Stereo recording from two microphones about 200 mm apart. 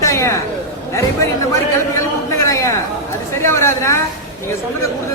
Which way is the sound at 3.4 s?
15° left (ahead or behind).